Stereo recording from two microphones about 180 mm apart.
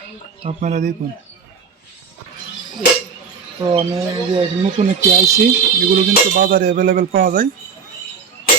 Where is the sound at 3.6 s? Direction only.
25° right (ahead or behind).